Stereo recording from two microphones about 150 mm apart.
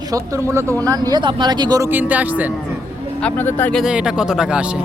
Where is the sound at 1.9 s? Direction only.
10° right (ahead or behind).